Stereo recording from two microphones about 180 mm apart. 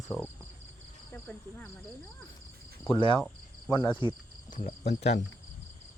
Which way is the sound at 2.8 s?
30° left (ahead or behind).